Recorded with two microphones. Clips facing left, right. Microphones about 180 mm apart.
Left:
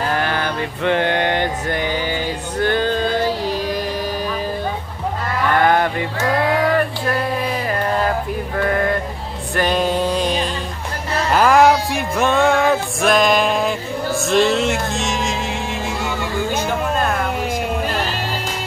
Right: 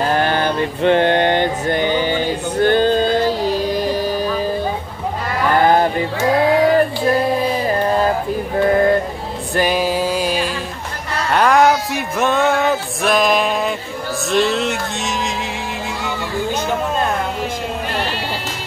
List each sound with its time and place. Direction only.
0.1 s mantra: 30° right (ahead or behind)
5.5 s music: 30° right (ahead or behind)
8.5 s a sound: 25° right (ahead or behind)
9.6 s music: 5° right (ahead or behind)